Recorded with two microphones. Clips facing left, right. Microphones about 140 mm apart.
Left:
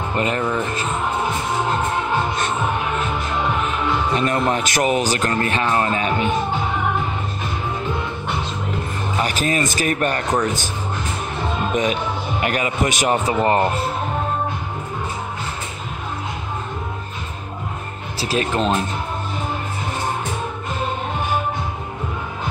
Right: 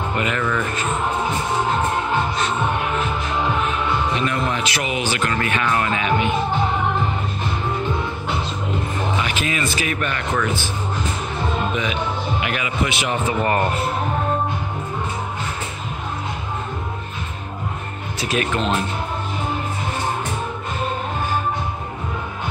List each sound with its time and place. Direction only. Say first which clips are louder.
0.2 s speech: left 3 dB; 30° left (ahead or behind)
4.2 s speech: left 3 dB; 45° left (ahead or behind)
9.2 s speech: left 3 dB; 40° left (ahead or behind)
11.7 s speech: left 3 dB; 40° left (ahead or behind); by 13.7 s 25° left (ahead or behind)
18.2 s speech: left 2 dB; 30° left (ahead or behind)